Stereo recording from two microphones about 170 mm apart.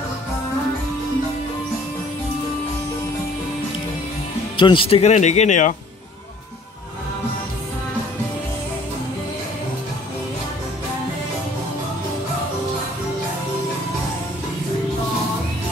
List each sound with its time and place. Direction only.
4.6 s speech: 30° left (ahead or behind); by 5.8 s 45° left (ahead or behind)